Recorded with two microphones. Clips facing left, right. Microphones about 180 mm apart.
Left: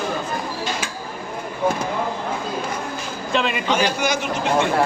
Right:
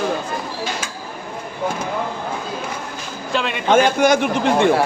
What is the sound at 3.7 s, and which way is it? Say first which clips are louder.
Speech: right 9 dB; 50° right (ahead or behind).